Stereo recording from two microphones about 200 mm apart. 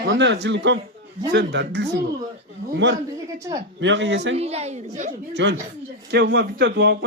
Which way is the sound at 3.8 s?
65° right (ahead or behind).